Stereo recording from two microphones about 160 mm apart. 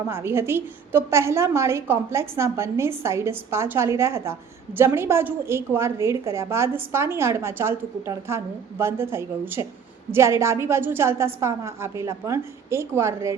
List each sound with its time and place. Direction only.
0.1 s a woman's voice: 15° right (ahead or behind)